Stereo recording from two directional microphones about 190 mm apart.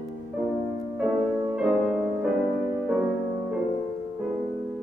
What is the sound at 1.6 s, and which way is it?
Music, 5° right (ahead or behind).